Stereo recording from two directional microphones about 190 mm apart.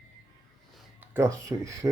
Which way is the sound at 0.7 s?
10° right (ahead or behind).